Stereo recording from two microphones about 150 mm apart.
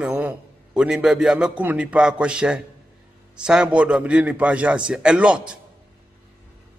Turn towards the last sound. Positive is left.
turn(degrees=-5)  # may be behind; listen again after turning